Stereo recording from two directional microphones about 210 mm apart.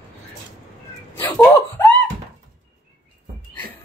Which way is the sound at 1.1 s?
10° left (ahead or behind).